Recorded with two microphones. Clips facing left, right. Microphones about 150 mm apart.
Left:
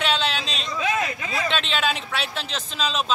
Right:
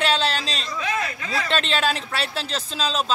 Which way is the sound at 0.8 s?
20° left (ahead or behind).